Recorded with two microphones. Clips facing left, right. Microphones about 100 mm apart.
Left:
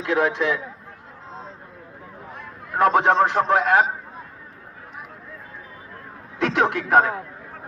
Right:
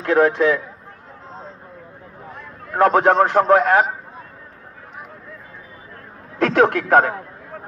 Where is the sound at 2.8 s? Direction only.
50° right (ahead or behind).